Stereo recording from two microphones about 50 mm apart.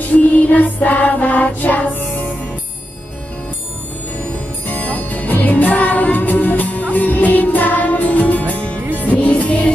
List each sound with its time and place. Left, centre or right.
0.1 s music: left
4.6 s music: left